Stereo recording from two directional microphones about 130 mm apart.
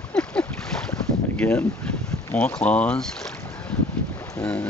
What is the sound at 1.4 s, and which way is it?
Speech, 10° left (ahead or behind).